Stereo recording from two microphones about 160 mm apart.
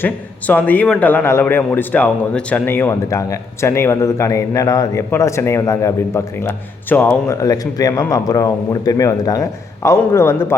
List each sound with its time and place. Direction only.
0.0 s a man's voice: 10° left (ahead or behind)
7.4 s a man's voice: 20° left (ahead or behind)